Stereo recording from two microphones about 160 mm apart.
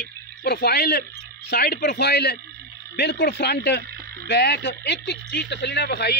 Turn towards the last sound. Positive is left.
turn(degrees=90)